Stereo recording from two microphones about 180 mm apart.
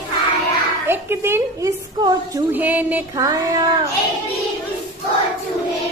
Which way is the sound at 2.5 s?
10° right (ahead or behind).